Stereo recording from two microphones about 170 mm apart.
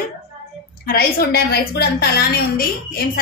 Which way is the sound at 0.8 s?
60° left (ahead or behind).